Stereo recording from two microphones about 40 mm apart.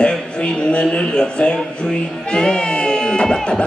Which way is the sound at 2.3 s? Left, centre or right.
Left.